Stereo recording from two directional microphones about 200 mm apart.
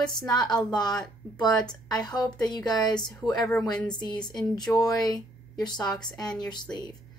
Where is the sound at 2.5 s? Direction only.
20° left (ahead or behind).